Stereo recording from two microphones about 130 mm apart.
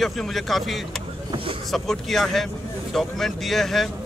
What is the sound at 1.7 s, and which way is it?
Speech, centre (ahead or behind).